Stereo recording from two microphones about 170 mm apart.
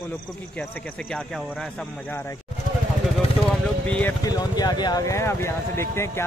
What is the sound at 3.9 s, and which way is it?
Speech, 10° left (ahead or behind).